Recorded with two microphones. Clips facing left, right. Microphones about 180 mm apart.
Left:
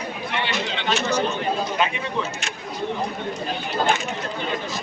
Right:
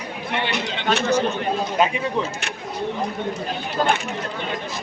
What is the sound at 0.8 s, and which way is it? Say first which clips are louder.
Speech: right 4 dB; 50° right (ahead or behind).